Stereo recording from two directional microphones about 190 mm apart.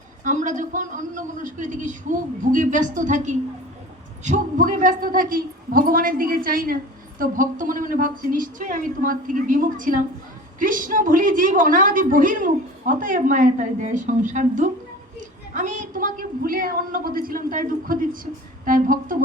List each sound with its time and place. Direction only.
0.3 s a man's voice: 40° right (ahead or behind)